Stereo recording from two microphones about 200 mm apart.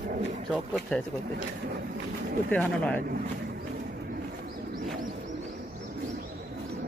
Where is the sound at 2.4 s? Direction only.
5° left (ahead or behind).